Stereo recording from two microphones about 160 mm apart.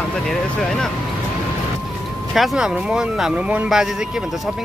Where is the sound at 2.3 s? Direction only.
Centre (ahead or behind).